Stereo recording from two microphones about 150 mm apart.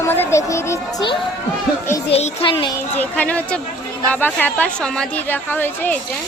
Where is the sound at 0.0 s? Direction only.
15° left (ahead or behind).